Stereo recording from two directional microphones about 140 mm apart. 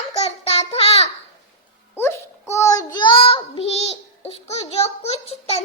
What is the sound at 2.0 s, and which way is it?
A child's voice, 20° left (ahead or behind).